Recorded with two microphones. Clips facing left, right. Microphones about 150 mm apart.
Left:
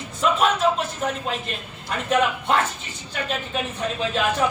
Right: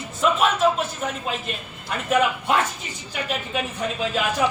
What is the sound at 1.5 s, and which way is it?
Speech, 5° right (ahead or behind).